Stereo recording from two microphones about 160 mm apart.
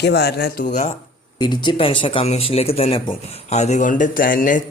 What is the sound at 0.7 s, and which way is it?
Speech, 50° left (ahead or behind).